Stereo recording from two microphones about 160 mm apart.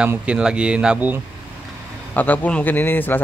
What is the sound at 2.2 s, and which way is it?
A man's voice, 10° left (ahead or behind).